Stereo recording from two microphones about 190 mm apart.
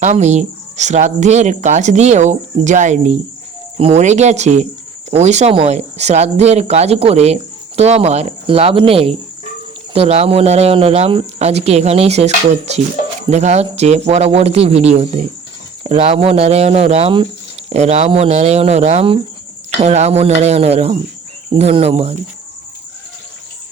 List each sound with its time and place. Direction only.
0.0 s speech: 40° right (ahead or behind)